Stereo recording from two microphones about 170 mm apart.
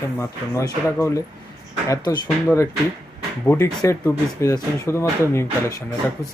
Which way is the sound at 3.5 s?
15° left (ahead or behind).